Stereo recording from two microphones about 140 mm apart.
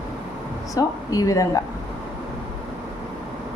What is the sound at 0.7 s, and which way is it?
Speech, 25° left (ahead or behind).